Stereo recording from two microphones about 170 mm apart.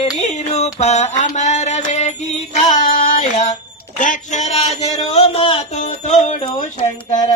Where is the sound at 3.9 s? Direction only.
50° left (ahead or behind).